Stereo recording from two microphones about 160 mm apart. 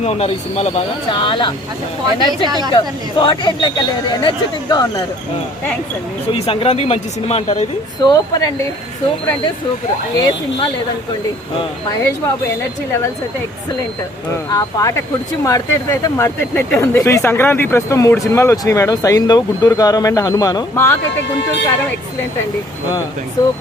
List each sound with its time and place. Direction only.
0.0 s speech: 40° left (ahead or behind)
2.4 s a woman's voice: 25° right (ahead or behind)
2.7 s speech: 30° left (ahead or behind)
6.3 s speech: 35° left (ahead or behind)
8.0 s speech: 25° left (ahead or behind)
10.2 s speech: 25° left (ahead or behind)
14.5 s speech: 25° left (ahead or behind)
23.4 s speech: 25° left (ahead or behind)